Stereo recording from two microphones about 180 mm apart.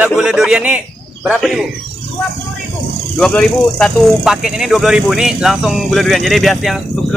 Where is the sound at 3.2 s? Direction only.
5° left (ahead or behind).